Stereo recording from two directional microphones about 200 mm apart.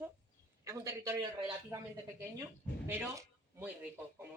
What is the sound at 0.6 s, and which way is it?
Speech, 15° right (ahead or behind).